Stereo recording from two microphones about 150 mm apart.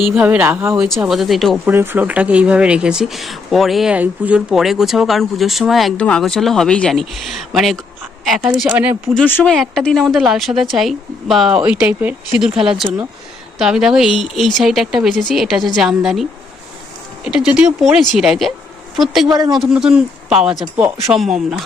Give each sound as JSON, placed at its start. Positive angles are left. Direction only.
{"t": 0.1, "sound": "speech", "side_deg": -10}
{"t": 0.9, "sound": "speech", "side_deg": 0}
{"t": 1.6, "sound": "speech", "side_deg": -15}
{"t": 8.6, "sound": "speech", "side_deg": -15}
{"t": 9.1, "sound": "speech", "side_deg": 10}
{"t": 17.2, "sound": "speech", "side_deg": -5}
{"t": 19.3, "sound": "a man's voice", "side_deg": -30}
{"t": 19.5, "sound": "speech", "side_deg": -5}